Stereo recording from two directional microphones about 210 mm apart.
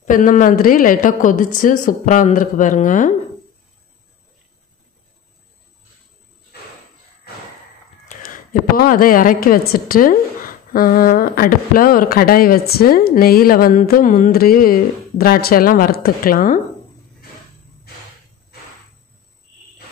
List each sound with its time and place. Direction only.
0.0 s a woman's voice: 40° left (ahead or behind)
8.1 s a woman's voice: 40° left (ahead or behind)